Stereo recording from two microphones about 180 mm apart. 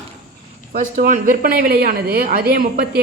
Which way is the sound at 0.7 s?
45° right (ahead or behind).